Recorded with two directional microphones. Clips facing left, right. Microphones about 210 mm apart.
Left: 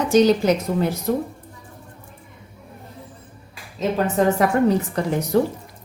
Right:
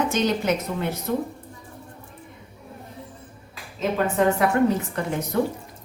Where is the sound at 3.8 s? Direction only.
40° left (ahead or behind).